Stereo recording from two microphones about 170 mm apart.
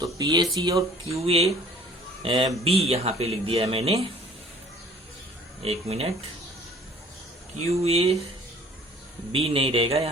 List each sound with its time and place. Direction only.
0.0 s speech: 25° right (ahead or behind)
1.2 s speech: 35° right (ahead or behind)
5.6 s speech: 35° right (ahead or behind)
7.5 s speech: 35° right (ahead or behind)
9.3 s speech: 35° right (ahead or behind)